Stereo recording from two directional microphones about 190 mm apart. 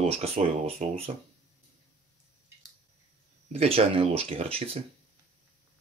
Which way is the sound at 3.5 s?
30° right (ahead or behind).